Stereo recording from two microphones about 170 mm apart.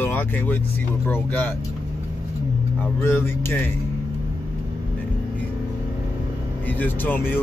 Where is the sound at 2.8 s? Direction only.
15° left (ahead or behind).